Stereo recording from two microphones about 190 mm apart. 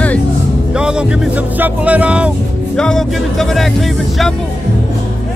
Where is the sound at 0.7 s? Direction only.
5° right (ahead or behind).